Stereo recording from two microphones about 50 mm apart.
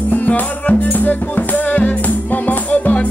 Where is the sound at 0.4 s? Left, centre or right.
Left.